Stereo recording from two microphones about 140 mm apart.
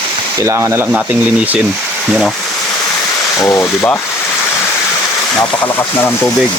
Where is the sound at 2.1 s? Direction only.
Centre (ahead or behind).